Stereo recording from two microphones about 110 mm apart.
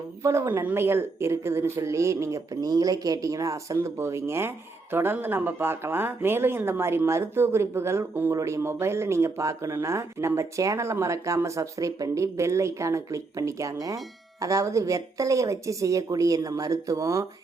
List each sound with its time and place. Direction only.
0.2 s speech: 25° right (ahead or behind)